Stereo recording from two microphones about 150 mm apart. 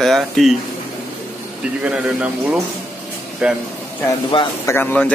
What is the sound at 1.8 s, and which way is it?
A man's voice, 10° right (ahead or behind).